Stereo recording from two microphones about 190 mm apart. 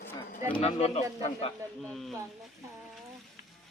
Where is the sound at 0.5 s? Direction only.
35° left (ahead or behind).